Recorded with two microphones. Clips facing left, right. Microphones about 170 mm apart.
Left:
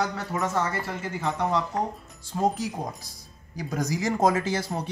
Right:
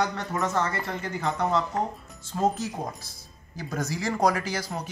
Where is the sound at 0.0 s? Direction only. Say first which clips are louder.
Even; 5° left (ahead or behind).